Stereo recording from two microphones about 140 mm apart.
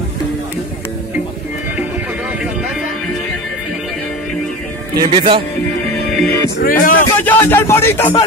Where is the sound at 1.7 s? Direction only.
10° right (ahead or behind).